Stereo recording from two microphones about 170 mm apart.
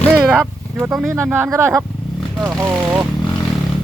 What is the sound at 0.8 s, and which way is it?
Speech, 10° right (ahead or behind).